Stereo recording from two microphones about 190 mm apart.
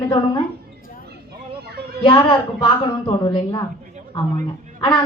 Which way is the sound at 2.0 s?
25° left (ahead or behind).